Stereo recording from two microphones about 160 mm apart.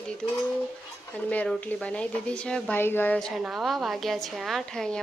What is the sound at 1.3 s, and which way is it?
Speech, 5° left (ahead or behind).